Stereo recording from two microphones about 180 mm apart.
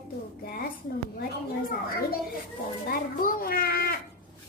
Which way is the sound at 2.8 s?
50° left (ahead or behind).